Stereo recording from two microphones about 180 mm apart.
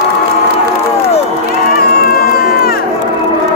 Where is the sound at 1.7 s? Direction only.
55° left (ahead or behind).